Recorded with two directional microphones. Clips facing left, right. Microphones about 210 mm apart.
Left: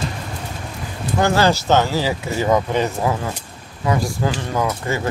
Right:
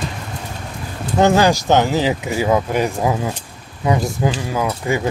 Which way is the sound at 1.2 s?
15° right (ahead or behind).